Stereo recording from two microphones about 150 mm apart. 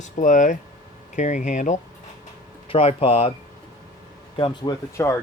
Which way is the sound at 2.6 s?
40° left (ahead or behind).